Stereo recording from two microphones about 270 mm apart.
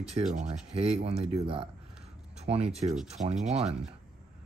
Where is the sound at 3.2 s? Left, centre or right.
Right.